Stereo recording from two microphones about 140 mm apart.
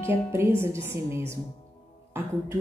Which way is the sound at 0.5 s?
20° right (ahead or behind).